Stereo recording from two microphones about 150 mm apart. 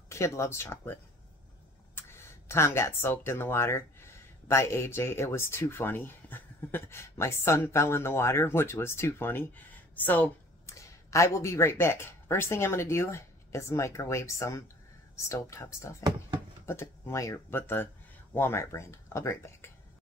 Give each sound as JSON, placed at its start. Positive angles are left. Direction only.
{"t": 0.1, "sound": "speech", "side_deg": 20}
{"t": 2.0, "sound": "speech", "side_deg": 15}